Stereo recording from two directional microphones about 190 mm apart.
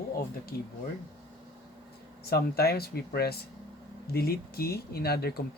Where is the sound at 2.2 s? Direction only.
55° left (ahead or behind).